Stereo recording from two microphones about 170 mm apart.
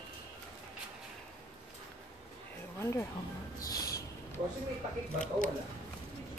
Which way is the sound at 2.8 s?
15° left (ahead or behind).